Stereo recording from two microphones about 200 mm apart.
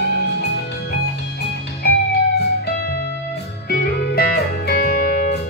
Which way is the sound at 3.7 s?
50° left (ahead or behind).